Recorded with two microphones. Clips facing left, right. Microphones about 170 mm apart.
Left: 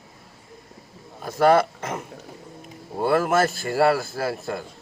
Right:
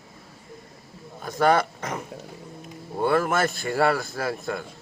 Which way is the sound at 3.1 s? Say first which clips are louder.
Left 3 dB; 30° left (ahead or behind).